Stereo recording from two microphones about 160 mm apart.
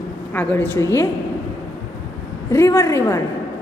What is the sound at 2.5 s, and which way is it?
Speech, 15° left (ahead or behind).